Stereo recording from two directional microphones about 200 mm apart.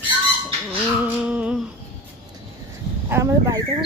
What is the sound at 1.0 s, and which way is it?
Speech, 5° right (ahead or behind).